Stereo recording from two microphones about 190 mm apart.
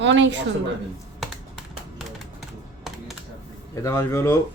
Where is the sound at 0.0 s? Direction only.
70° right (ahead or behind).